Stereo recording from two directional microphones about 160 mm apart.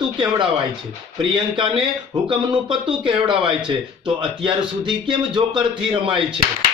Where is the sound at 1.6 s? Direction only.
30° right (ahead or behind).